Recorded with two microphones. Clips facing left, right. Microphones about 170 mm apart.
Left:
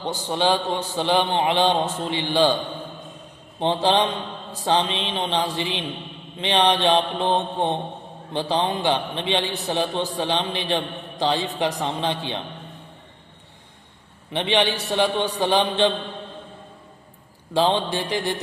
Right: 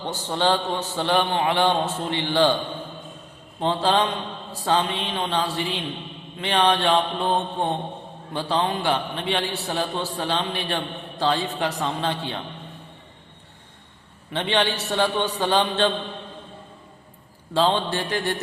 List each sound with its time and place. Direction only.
0.1 s a man's voice: 15° left (ahead or behind)
3.6 s a man's voice: 20° left (ahead or behind)
14.3 s a man's voice: 15° left (ahead or behind)
17.5 s a man's voice: 15° left (ahead or behind)